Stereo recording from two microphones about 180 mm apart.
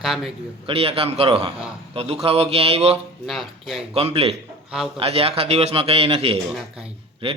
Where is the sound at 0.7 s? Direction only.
30° right (ahead or behind).